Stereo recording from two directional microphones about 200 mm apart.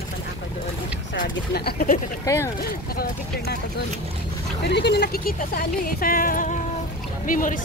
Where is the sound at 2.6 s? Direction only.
50° left (ahead or behind).